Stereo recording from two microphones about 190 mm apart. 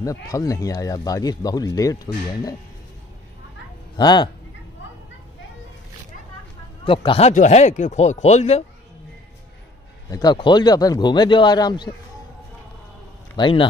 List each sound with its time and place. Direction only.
0.0 s speech: 15° left (ahead or behind)
3.9 s speech: 20° left (ahead or behind)
6.8 s speech: 25° left (ahead or behind)
10.0 s speech: 20° left (ahead or behind)
13.4 s speech: 25° left (ahead or behind)